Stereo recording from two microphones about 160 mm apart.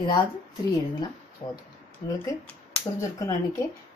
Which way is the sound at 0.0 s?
30° left (ahead or behind).